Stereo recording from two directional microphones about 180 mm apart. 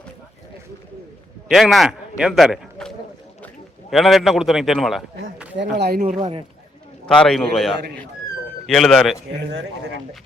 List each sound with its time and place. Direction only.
1.5 s a man's voice: centre (ahead or behind)
5.5 s speech: 65° right (ahead or behind)
6.1 s a man's voice: 30° right (ahead or behind)
7.1 s a man's voice: 5° left (ahead or behind)